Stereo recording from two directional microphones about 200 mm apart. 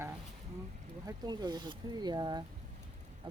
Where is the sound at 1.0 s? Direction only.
20° right (ahead or behind).